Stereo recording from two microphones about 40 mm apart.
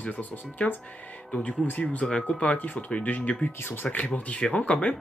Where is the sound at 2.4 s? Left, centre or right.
Left.